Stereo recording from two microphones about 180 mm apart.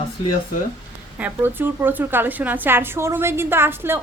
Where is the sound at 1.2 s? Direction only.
10° right (ahead or behind).